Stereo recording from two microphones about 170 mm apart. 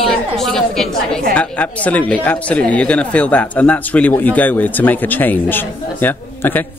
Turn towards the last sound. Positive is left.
turn(degrees=10)  # may be behind; listen again after turning